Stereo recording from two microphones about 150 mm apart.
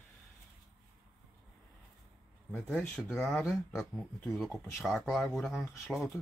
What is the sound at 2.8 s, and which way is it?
Speech, 5° left (ahead or behind).